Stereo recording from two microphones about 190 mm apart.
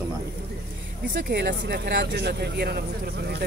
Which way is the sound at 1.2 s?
55° right (ahead or behind).